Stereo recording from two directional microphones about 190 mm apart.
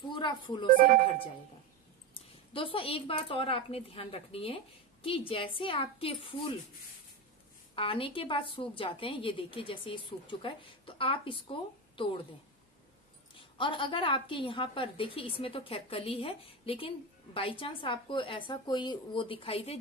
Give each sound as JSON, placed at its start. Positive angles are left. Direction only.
{"t": 0.1, "sound": "speech", "side_deg": 25}
{"t": 0.7, "sound": "speech", "side_deg": -45}
{"t": 2.5, "sound": "a woman's voice", "side_deg": 30}
{"t": 7.7, "sound": "a woman's voice", "side_deg": 30}
{"t": 13.4, "sound": "a woman's voice", "side_deg": 25}